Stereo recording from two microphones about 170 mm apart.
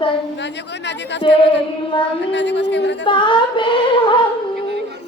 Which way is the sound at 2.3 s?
90° left.